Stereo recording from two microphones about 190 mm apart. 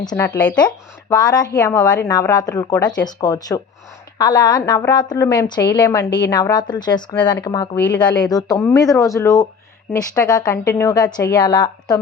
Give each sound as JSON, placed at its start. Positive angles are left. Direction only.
{"t": 0.0, "sound": "speech", "side_deg": 5}
{"t": 1.1, "sound": "a woman's voice", "side_deg": 20}